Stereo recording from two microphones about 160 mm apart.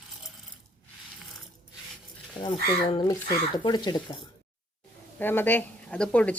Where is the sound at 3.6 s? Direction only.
25° left (ahead or behind).